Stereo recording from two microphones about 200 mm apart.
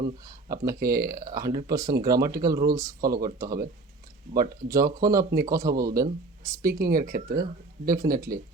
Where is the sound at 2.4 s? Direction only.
20° right (ahead or behind).